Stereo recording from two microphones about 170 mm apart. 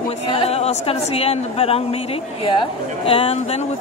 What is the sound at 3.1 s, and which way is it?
Speech, 35° left (ahead or behind).